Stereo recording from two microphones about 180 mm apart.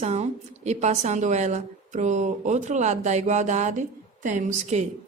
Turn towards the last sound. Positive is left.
turn(degrees=-40)  # may be behind; listen again after turning